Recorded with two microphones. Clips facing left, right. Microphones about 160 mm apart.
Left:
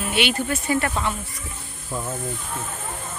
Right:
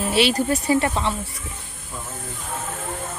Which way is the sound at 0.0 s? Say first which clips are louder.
Right 4 dB; 35° right (ahead or behind).